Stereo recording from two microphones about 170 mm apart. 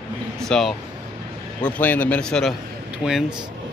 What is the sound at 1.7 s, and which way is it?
A man's voice, 10° left (ahead or behind).